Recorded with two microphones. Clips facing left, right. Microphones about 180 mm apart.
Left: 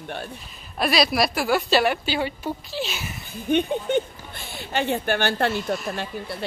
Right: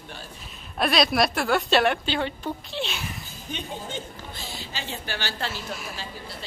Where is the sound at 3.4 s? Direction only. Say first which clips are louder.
Left 13 dB; 60° left (ahead or behind).